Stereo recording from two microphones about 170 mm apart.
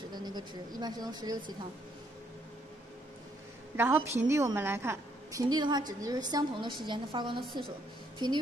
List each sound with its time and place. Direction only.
0.1 s a woman's voice: 25° right (ahead or behind)
3.7 s a woman's voice: 15° right (ahead or behind)